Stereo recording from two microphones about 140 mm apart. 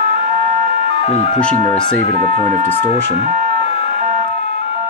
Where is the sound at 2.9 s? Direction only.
40° left (ahead or behind).